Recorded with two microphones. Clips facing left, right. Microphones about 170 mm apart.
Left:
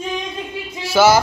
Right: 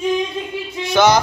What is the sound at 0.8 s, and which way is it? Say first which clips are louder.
Music: left 1 dB; 5° left (ahead or behind).